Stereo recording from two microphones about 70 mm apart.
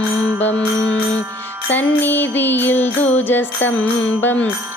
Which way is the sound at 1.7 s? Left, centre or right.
Left.